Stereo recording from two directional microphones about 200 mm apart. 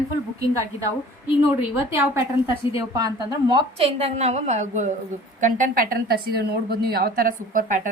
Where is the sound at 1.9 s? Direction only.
15° right (ahead or behind).